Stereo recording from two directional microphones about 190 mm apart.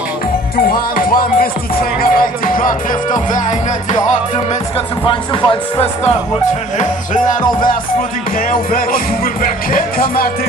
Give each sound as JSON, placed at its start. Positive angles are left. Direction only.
{"t": 0.7, "sound": "music", "side_deg": 50}
{"t": 5.0, "sound": "speech", "side_deg": 30}
{"t": 8.5, "sound": "music", "side_deg": 50}